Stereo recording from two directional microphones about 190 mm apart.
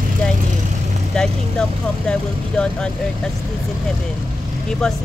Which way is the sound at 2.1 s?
5° left (ahead or behind).